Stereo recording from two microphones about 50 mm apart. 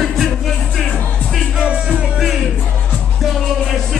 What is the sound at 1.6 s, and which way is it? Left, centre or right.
Music, right.